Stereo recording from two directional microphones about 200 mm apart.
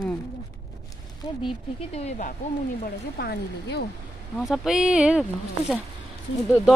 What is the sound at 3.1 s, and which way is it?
Speech, 55° left (ahead or behind).